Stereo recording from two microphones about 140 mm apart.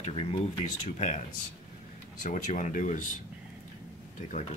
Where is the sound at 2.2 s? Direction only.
65° left (ahead or behind).